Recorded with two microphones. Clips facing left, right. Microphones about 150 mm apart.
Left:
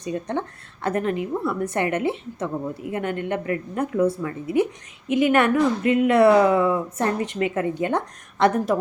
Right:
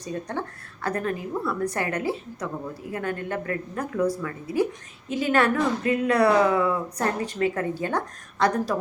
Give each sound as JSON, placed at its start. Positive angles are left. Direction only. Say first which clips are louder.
{"t": 0.0, "sound": "a woman's voice", "louder": "left 4 dB", "side_deg": 20}